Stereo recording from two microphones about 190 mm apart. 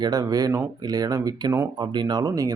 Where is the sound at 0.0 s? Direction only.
20° right (ahead or behind).